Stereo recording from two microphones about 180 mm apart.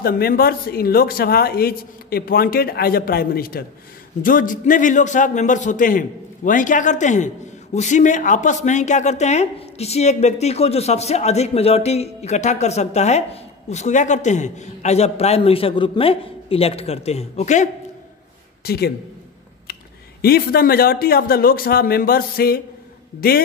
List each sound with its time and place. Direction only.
0.0 s a man's voice: 55° left (ahead or behind); by 17.6 s 40° left (ahead or behind)
18.6 s speech: 60° left (ahead or behind)